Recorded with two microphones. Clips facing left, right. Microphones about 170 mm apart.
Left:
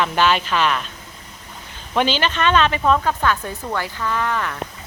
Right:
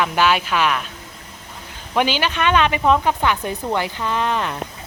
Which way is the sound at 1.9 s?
10° right (ahead or behind).